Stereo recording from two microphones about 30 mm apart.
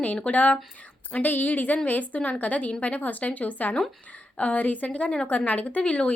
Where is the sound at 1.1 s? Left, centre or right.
Left.